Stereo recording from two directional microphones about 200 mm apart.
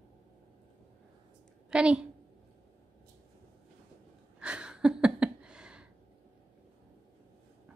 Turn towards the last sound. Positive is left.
turn(degrees=-5)  # may be behind; listen again after turning